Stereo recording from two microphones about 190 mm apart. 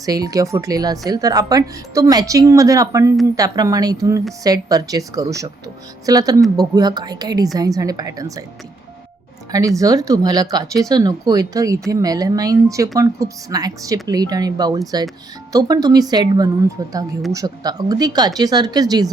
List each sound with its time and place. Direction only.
0.0 s speech: 20° right (ahead or behind)
9.5 s speech: 20° right (ahead or behind)